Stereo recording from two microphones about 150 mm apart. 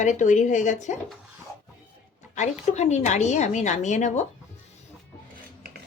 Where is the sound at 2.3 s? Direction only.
50° left (ahead or behind).